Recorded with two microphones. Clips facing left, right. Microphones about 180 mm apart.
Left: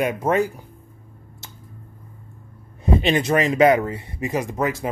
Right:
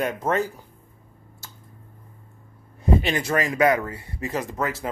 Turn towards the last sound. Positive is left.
turn(degrees=15)  # may be behind; listen again after turning